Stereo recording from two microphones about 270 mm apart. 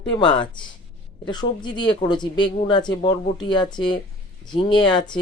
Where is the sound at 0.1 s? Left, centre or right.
Centre.